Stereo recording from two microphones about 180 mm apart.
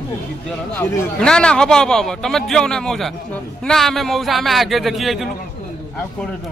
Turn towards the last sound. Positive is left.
turn(degrees=0)  # may be behind; listen again after turning